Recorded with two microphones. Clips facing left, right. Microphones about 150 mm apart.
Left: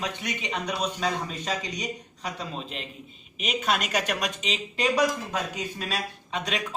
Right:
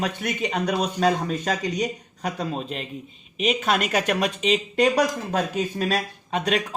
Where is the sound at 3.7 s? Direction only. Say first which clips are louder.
Right 1 dB; 50° right (ahead or behind).